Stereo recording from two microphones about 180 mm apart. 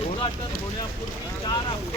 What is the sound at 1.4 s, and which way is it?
Speech, 25° left (ahead or behind).